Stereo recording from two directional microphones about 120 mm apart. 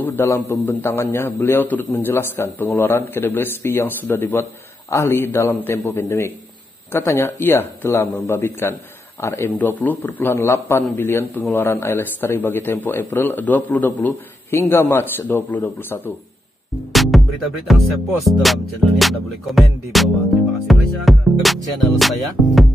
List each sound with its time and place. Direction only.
0.0 s a man's voice: 20° left (ahead or behind)
16.9 s music: centre (ahead or behind)